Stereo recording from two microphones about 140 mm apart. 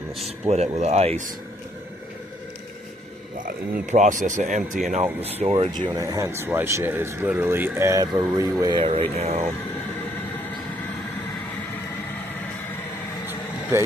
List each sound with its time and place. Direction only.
0.3 s speech: 50° right (ahead or behind)
3.9 s speech: 60° right (ahead or behind)
5.2 s speech: 45° right (ahead or behind)
6.0 s speech: 25° right (ahead or behind)
8.8 s speech: 45° right (ahead or behind)